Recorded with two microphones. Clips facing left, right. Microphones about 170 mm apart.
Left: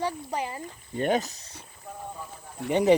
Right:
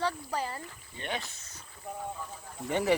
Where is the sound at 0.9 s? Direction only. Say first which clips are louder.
Left 12 dB; 45° left (ahead or behind).